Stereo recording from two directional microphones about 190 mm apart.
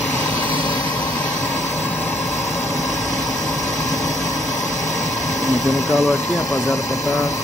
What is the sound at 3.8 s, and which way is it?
Engine, 20° left (ahead or behind).